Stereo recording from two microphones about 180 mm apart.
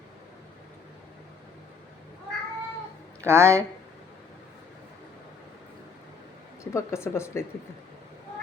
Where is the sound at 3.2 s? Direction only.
15° right (ahead or behind).